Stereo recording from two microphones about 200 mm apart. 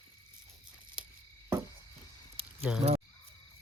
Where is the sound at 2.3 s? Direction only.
30° right (ahead or behind).